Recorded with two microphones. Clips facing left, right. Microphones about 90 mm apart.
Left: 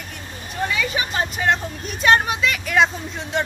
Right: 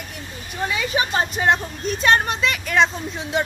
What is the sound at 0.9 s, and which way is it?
Speech, 30° right (ahead or behind).